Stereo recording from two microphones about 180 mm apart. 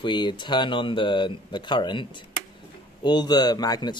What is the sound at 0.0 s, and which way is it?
Speech, 25° left (ahead or behind).